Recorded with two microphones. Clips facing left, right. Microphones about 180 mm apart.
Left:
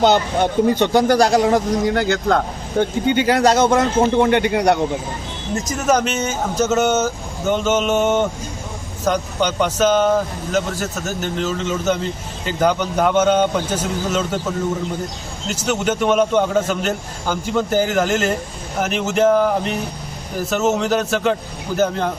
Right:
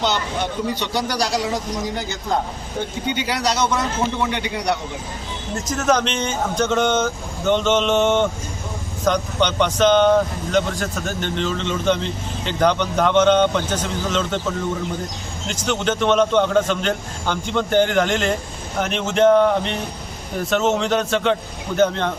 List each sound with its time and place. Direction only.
0.0 s speech: 50° left (ahead or behind)
5.5 s speech: 10° left (ahead or behind)
15.4 s a man's voice: 5° left (ahead or behind)